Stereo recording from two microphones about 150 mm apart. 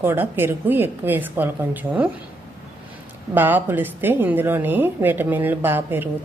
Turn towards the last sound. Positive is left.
turn(degrees=-15)  # may be behind; listen again after turning